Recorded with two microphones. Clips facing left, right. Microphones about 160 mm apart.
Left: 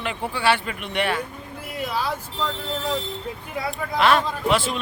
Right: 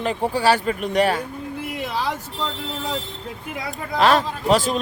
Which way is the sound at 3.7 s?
40° right (ahead or behind).